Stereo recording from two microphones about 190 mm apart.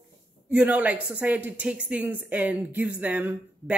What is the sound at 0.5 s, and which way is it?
A woman's voice, 10° right (ahead or behind).